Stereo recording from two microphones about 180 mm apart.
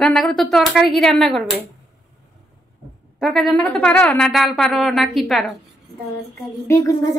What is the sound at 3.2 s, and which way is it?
Speech, centre (ahead or behind).